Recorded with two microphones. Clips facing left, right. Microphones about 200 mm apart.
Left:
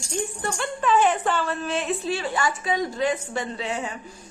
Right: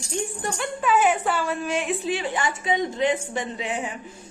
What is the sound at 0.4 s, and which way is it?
A woman's voice, 10° right (ahead or behind).